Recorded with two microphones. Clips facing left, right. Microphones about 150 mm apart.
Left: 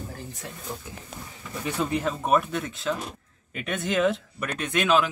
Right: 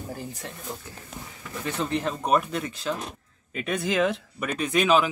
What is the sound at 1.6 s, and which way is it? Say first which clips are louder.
Speech: left 1 dB; 5° left (ahead or behind).